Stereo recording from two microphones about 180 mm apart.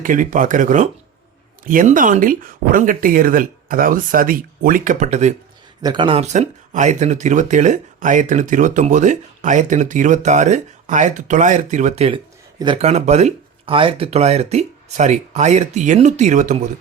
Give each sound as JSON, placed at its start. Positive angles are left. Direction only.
{"t": 0.0, "sound": "speech", "side_deg": -50}
{"t": 5.8, "sound": "speech", "side_deg": -25}